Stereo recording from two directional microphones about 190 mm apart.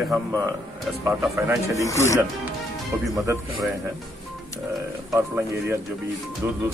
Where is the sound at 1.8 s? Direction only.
15° left (ahead or behind).